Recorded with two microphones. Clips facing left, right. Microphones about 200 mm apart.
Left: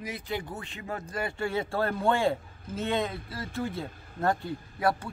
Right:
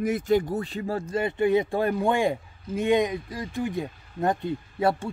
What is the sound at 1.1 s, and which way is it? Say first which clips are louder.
A man's voice: right 9 dB; 20° right (ahead or behind).